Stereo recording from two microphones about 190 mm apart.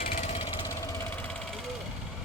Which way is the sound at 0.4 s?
20° left (ahead or behind).